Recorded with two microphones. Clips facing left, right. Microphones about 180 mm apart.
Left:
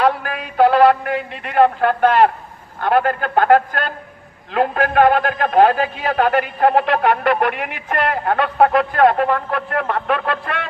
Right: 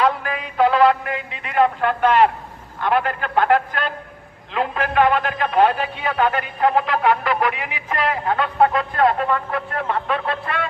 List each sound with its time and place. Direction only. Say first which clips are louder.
0.0 s a man's voice: left 2 dB; 55° left (ahead or behind)
6.1 s speech: left 4 dB; 65° left (ahead or behind)